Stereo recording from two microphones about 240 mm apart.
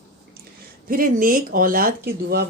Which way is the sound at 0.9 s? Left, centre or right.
Right.